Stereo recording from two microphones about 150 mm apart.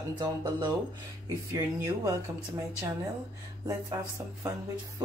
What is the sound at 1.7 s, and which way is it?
Speech, 20° right (ahead or behind).